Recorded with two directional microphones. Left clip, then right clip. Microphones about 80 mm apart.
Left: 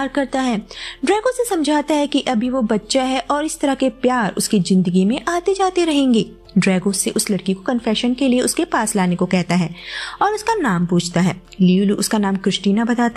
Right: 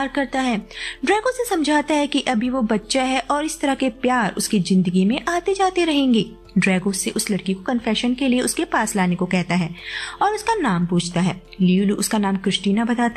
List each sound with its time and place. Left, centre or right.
0.0 s a woman's voice: left
1.0 s a woman's voice: left
10.1 s a woman's voice: left